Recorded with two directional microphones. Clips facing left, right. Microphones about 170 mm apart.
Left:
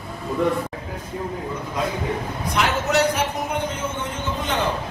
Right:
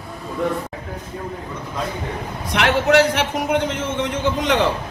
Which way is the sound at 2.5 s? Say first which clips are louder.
Right 5 dB; 80° right.